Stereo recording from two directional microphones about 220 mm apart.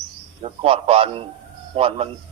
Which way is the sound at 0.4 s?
25° right (ahead or behind).